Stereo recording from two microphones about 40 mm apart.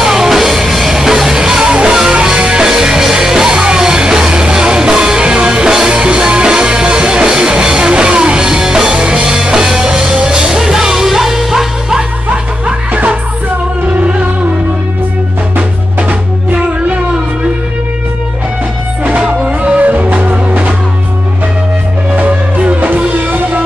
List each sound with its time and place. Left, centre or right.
0.0 s music: centre
12.3 s music: right
15.5 s music: right
19.1 s music: right
19.8 s music: right
22.1 s music: right